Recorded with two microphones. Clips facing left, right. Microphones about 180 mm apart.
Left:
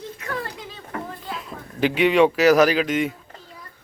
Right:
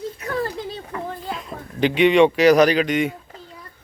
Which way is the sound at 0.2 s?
35° right (ahead or behind).